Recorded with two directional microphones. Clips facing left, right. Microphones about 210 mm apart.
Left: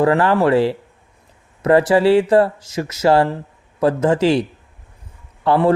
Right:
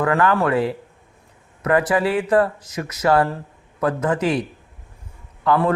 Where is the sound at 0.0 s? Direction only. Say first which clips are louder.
Left 4 dB; 30° left (ahead or behind).